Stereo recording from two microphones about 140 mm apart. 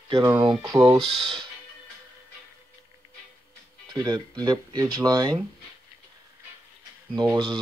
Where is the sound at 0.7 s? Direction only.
20° right (ahead or behind).